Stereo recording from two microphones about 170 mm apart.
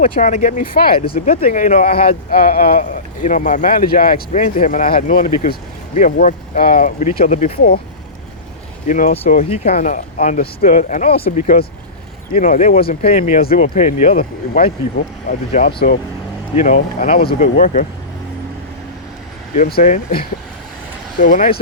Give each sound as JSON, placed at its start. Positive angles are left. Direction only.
{"t": 0.0, "sound": "speech", "side_deg": 45}
{"t": 1.2, "sound": "speech", "side_deg": 45}
{"t": 8.9, "sound": "speech", "side_deg": 50}
{"t": 9.5, "sound": "speech", "side_deg": 40}
{"t": 17.2, "sound": "speech", "side_deg": 55}
{"t": 19.5, "sound": "speech", "side_deg": 60}